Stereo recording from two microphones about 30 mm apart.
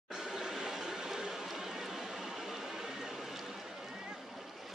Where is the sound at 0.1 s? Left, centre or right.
Centre.